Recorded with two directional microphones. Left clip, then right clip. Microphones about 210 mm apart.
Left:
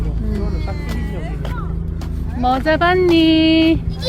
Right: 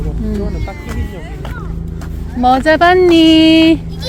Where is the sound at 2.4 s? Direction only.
40° right (ahead or behind).